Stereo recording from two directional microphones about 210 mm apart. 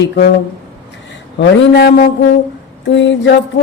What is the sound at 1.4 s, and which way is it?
Speech, 50° left (ahead or behind).